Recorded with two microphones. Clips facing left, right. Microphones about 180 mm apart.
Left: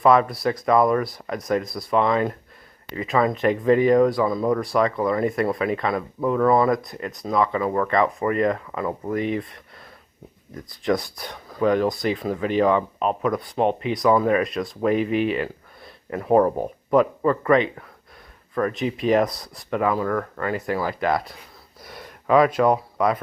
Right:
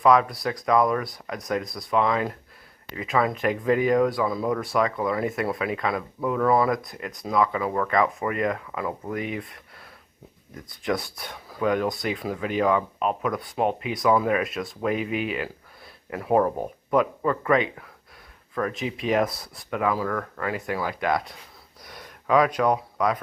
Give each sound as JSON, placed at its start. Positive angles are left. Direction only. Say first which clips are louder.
{"t": 0.0, "sound": "speech", "louder": "left 2 dB", "side_deg": 0}
{"t": 10.7, "sound": "speech", "louder": "left 4 dB", "side_deg": 0}
{"t": 21.9, "sound": "a sound", "louder": "left 3 dB", "side_deg": 5}
{"t": 22.5, "sound": "speech", "louder": "left 4 dB", "side_deg": 5}